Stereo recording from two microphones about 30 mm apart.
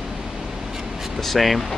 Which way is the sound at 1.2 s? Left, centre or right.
Centre.